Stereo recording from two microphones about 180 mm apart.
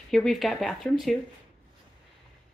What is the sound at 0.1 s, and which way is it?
A woman's voice, centre (ahead or behind).